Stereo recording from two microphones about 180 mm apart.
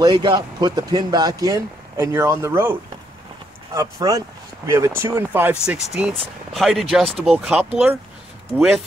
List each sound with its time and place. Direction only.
0.0 s speech: 25° right (ahead or behind)
3.7 s speech: 20° right (ahead or behind)